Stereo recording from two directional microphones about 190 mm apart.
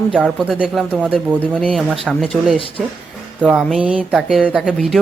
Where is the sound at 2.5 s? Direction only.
30° left (ahead or behind).